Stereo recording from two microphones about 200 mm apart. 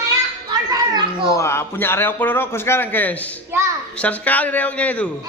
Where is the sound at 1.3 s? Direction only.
15° left (ahead or behind).